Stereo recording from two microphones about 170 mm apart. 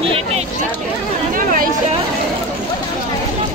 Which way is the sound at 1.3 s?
55° right (ahead or behind).